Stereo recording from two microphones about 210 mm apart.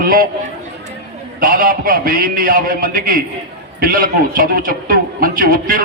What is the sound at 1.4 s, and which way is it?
A man's voice, 40° right (ahead or behind).